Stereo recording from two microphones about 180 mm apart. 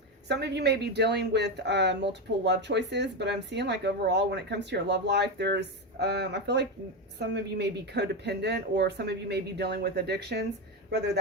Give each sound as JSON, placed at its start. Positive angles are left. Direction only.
{"t": 0.3, "sound": "speech", "side_deg": -65}